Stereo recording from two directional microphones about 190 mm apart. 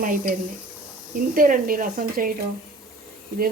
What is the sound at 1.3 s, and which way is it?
Speech, 45° right (ahead or behind).